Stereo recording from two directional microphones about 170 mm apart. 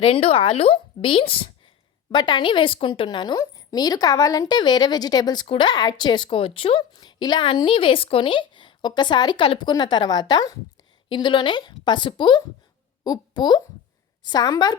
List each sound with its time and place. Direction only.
0.0 s a woman's voice: 35° left (ahead or behind)